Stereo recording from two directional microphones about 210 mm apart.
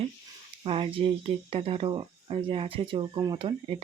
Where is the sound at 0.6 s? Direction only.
25° right (ahead or behind).